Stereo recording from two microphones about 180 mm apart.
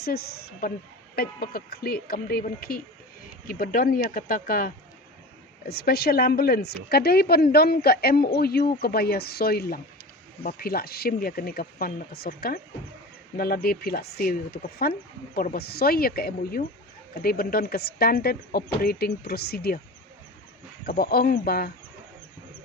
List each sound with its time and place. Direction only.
0.6 s a woman's voice: 55° left (ahead or behind)
20.8 s a woman's voice: 55° left (ahead or behind)